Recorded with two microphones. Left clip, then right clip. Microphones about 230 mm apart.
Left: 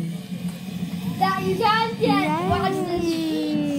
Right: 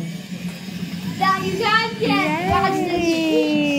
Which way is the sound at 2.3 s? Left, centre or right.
Centre.